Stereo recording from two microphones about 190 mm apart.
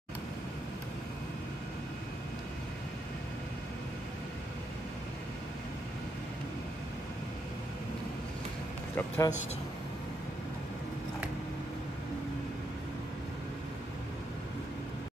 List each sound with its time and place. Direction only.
8.9 s a man's voice: 10° left (ahead or behind)